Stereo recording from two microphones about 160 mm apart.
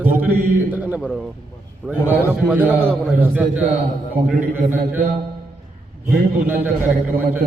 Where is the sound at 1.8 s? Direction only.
10° right (ahead or behind).